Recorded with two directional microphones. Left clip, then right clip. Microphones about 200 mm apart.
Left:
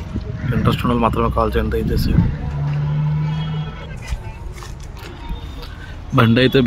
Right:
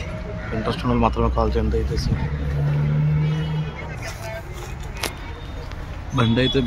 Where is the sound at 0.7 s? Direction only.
10° left (ahead or behind).